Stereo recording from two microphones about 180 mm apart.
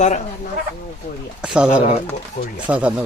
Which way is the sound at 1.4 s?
5° right (ahead or behind).